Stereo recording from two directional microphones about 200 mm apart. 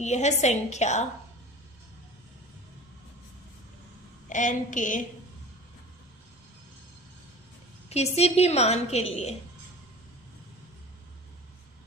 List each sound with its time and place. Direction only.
0.0 s a woman's voice: 35° left (ahead or behind)
4.3 s a woman's voice: 40° left (ahead or behind)
7.9 s a woman's voice: 30° left (ahead or behind)